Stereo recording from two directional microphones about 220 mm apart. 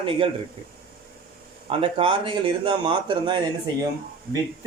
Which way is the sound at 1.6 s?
25° right (ahead or behind).